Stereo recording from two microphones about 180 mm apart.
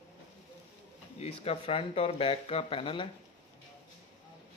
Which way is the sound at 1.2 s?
35° left (ahead or behind).